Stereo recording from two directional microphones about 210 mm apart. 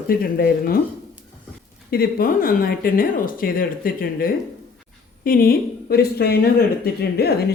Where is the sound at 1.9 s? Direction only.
45° left (ahead or behind).